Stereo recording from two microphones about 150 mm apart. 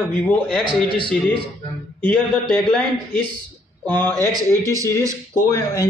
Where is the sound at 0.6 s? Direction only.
35° left (ahead or behind).